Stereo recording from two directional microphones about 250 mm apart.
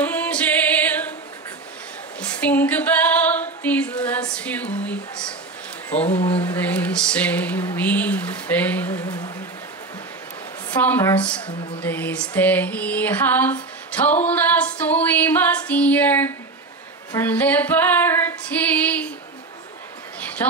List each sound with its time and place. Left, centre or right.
0.0 s music: centre
2.1 s female singing: centre
5.9 s speech: left
6.4 s a sound: centre
10.7 s a sound: centre
17.1 s female singing: centre